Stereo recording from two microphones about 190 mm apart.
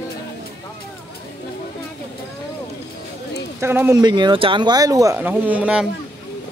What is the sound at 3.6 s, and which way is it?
Speech, 10° right (ahead or behind).